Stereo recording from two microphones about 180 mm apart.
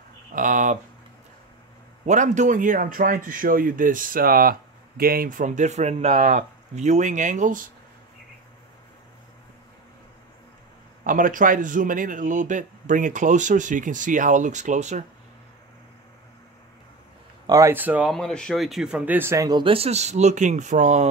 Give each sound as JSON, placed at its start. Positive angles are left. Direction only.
{"t": 0.3, "sound": "a man's voice", "side_deg": -45}
{"t": 2.0, "sound": "a man's voice", "side_deg": -40}
{"t": 11.1, "sound": "a man's voice", "side_deg": -50}
{"t": 17.5, "sound": "speech", "side_deg": -15}
{"t": 18.1, "sound": "speech", "side_deg": 5}